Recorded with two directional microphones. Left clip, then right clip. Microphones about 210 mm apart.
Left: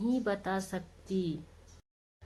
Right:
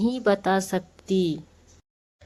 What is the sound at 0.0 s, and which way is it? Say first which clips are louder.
Speech: right 10 dB; 45° right (ahead or behind).